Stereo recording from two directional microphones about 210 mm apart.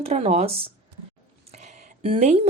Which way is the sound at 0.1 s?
30° right (ahead or behind).